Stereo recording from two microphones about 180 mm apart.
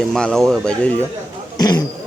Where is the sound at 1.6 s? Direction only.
20° left (ahead or behind).